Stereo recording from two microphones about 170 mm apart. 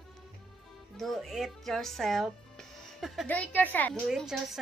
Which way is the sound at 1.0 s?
Centre (ahead or behind).